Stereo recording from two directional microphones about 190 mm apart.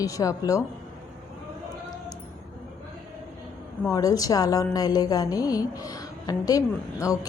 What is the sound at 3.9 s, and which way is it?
A woman's voice, 20° left (ahead or behind).